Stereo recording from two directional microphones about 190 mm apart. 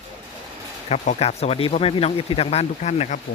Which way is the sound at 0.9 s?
35° left (ahead or behind).